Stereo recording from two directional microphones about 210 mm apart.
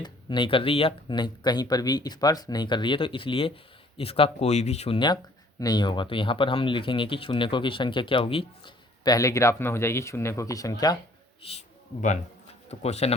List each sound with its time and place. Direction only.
0.0 s speech: 20° left (ahead or behind)
11.4 s speech: 30° left (ahead or behind)
12.6 s speech: 30° left (ahead or behind)